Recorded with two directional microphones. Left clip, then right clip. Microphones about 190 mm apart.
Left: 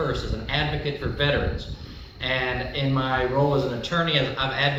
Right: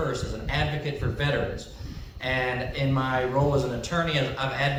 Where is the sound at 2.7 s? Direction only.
30° right (ahead or behind).